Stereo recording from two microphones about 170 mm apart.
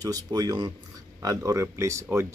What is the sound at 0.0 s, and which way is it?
Speech, 20° right (ahead or behind).